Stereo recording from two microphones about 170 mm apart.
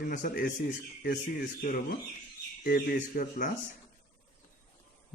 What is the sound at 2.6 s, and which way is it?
Speech, 60° left (ahead or behind).